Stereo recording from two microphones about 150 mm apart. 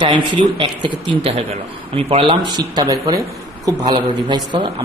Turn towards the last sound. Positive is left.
turn(degrees=-30)  # may be behind; listen again after turning